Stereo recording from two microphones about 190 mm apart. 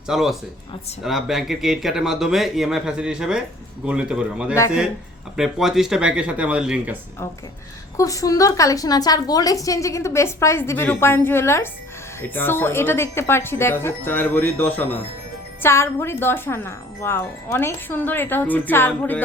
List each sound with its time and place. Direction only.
0.1 s speech: centre (ahead or behind)
7.9 s a woman's voice: 15° left (ahead or behind)